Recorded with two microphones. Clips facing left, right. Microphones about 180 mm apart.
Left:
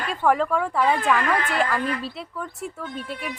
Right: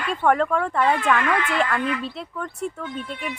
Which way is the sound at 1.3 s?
35° left (ahead or behind).